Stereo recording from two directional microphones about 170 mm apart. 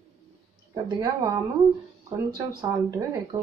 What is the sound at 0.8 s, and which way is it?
Speech, 25° right (ahead or behind).